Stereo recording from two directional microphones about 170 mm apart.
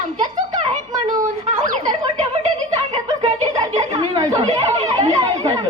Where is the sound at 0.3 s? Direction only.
45° right (ahead or behind).